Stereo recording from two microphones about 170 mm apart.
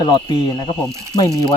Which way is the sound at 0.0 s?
25° left (ahead or behind).